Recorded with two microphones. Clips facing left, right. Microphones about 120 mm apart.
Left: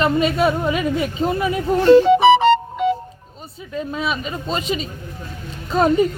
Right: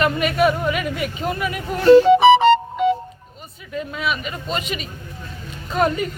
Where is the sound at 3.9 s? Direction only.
30° left (ahead or behind).